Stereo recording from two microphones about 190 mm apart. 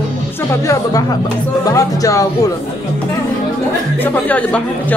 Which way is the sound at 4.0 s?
10° left (ahead or behind).